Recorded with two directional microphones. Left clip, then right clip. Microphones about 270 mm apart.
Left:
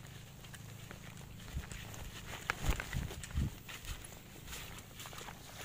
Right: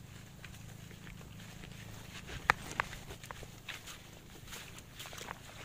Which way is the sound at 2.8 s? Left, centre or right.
Centre.